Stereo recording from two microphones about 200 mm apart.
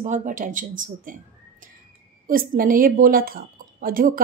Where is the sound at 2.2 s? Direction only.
45° right (ahead or behind).